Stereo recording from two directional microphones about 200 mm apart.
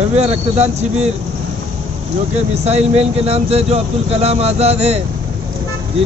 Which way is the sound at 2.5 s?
30° right (ahead or behind).